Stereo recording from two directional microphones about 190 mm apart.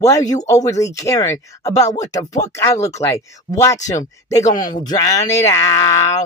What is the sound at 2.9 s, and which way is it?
Speech, 15° left (ahead or behind).